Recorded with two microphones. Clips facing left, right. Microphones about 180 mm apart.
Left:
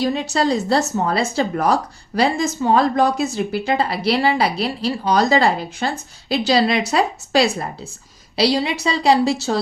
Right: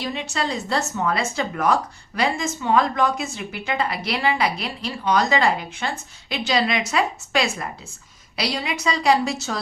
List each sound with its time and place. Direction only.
0.0 s speech: 40° left (ahead or behind)